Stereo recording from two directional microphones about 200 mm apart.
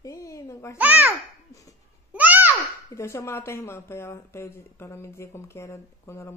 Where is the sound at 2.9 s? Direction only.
15° left (ahead or behind).